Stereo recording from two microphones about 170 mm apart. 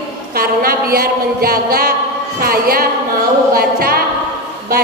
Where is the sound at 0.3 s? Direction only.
60° right (ahead or behind).